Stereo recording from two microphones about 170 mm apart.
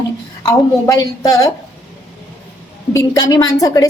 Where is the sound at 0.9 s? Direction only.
20° left (ahead or behind).